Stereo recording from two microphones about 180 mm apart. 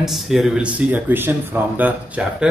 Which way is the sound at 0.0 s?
Centre (ahead or behind).